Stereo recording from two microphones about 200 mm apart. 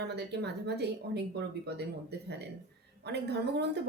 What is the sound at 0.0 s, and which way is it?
A woman's voice, 55° right (ahead or behind).